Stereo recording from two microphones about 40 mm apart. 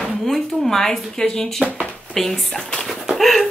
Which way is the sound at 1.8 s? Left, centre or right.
Centre.